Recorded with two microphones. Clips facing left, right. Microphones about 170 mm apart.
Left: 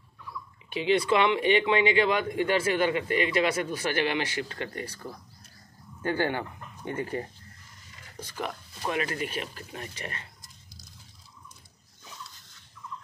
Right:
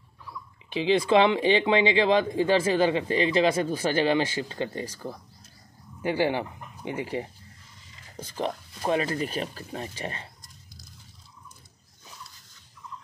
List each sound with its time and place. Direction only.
1.2 s speech: 30° right (ahead or behind)
6.0 s speech: 15° right (ahead or behind)
8.4 s speech: 30° right (ahead or behind)